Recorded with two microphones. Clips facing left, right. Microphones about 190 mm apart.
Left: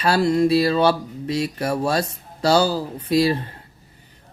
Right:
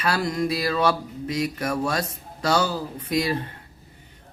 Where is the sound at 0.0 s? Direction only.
30° left (ahead or behind).